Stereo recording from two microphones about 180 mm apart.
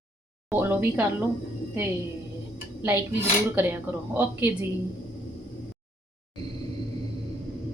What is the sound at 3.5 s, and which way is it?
A woman's voice, 10° right (ahead or behind).